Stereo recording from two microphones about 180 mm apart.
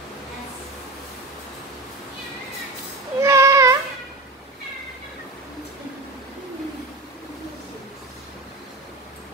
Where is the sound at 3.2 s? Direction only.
15° right (ahead or behind).